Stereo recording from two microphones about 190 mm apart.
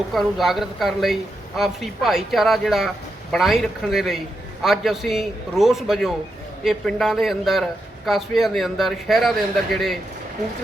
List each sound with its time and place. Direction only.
0.1 s speech: centre (ahead or behind)